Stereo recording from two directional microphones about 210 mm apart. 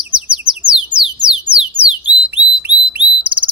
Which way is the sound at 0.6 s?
20° right (ahead or behind).